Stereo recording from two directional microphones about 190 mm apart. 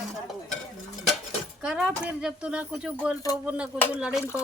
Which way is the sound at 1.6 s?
5° right (ahead or behind).